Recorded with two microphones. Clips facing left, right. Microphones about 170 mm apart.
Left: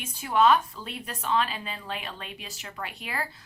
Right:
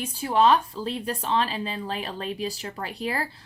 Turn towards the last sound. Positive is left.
turn(degrees=-35)  # may be behind; listen again after turning